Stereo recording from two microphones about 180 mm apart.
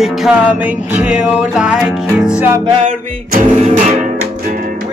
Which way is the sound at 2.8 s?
45° right (ahead or behind).